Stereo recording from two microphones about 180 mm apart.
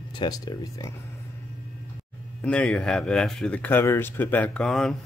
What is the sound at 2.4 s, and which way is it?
Speech, 5° left (ahead or behind).